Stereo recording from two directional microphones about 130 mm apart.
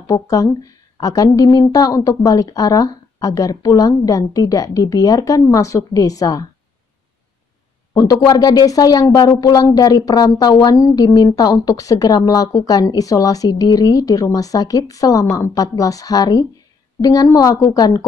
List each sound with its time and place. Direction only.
0.0 s speech: 25° left (ahead or behind)
7.9 s speech: 25° left (ahead or behind)